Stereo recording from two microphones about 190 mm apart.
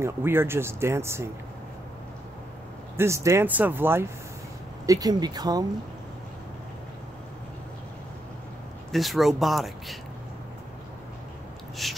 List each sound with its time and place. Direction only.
0.0 s speech: 10° right (ahead or behind)
3.0 s speech: 15° right (ahead or behind)
8.9 s speech: centre (ahead or behind)
11.8 s speech: centre (ahead or behind)